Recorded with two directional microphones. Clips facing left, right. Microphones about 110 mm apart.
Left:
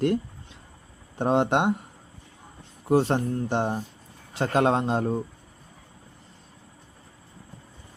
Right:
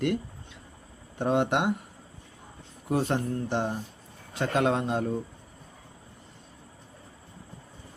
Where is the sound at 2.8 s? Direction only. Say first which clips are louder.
Left 5 dB; 30° left (ahead or behind).